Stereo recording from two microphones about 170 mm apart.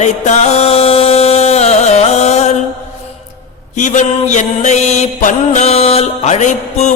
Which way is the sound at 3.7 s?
45° left (ahead or behind).